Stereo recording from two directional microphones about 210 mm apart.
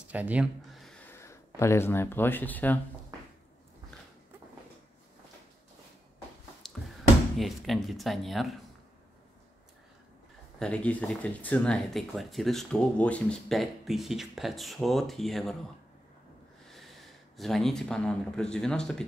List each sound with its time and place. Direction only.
0.1 s speech: 5° right (ahead or behind); by 2.8 s 10° left (ahead or behind)
6.6 s a sound: centre (ahead or behind)
7.3 s speech: centre (ahead or behind)
10.6 s speech: 5° left (ahead or behind)
16.6 s snort: centre (ahead or behind)
17.4 s speech: centre (ahead or behind)